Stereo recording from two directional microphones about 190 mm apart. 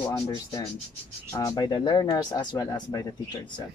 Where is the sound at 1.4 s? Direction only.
20° left (ahead or behind).